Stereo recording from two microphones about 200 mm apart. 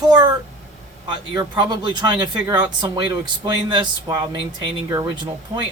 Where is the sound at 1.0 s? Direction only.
25° right (ahead or behind).